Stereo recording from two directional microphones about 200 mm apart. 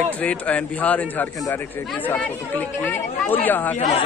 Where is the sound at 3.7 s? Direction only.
30° left (ahead or behind).